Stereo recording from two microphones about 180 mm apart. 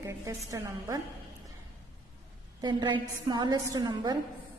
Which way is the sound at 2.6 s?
25° right (ahead or behind).